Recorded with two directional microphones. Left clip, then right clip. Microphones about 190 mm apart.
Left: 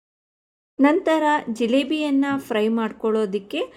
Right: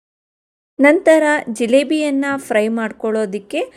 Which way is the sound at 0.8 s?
40° right (ahead or behind).